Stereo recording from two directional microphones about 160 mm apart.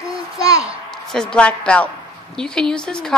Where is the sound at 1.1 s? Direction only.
5° left (ahead or behind).